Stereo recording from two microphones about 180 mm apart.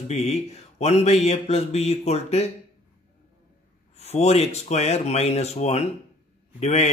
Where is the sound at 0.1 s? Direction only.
35° left (ahead or behind).